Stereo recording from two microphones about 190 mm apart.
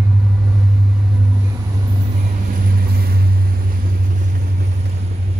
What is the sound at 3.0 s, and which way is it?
Vehicle, 55° right (ahead or behind).